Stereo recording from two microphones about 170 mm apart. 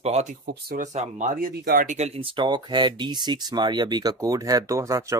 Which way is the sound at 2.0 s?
35° right (ahead or behind).